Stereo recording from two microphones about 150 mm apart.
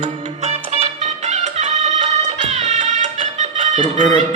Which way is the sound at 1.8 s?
50° right (ahead or behind).